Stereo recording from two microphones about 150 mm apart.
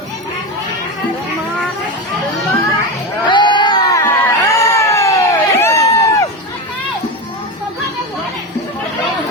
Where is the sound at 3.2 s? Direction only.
30° left (ahead or behind).